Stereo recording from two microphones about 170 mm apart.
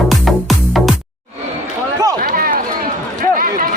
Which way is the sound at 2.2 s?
55° right (ahead or behind).